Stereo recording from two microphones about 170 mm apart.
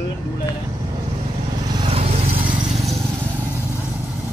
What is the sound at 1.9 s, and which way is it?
Vehicle, 35° right (ahead or behind).